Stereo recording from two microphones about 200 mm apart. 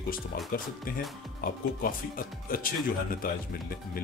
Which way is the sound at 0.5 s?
45° left (ahead or behind).